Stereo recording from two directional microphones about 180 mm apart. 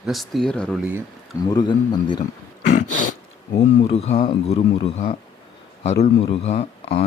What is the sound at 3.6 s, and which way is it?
Speech, 35° left (ahead or behind).